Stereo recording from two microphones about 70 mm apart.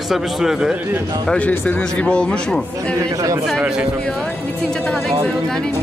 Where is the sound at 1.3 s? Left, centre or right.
Left.